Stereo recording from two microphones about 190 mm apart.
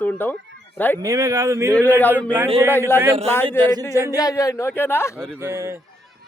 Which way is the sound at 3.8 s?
15° left (ahead or behind).